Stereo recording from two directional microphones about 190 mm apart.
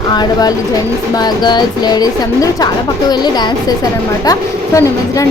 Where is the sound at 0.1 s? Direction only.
20° left (ahead or behind).